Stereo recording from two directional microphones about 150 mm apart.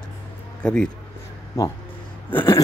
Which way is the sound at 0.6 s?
5° left (ahead or behind).